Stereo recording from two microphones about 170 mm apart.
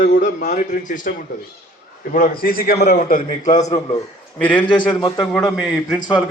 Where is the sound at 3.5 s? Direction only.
20° left (ahead or behind).